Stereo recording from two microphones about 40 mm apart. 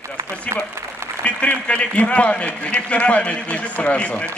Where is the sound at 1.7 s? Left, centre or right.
Left.